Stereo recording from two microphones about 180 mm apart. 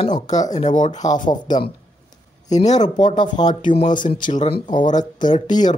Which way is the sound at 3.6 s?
45° left (ahead or behind).